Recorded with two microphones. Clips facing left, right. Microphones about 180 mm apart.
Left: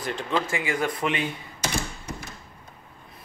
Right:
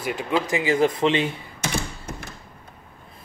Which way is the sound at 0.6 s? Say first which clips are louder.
Right 7 dB; 25° right (ahead or behind).